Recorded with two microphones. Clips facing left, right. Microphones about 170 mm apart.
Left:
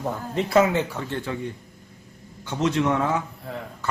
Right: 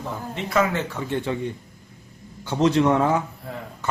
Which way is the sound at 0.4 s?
40° left (ahead or behind).